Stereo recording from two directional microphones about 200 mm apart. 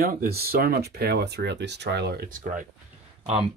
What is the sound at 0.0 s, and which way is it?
Speech, 45° right (ahead or behind).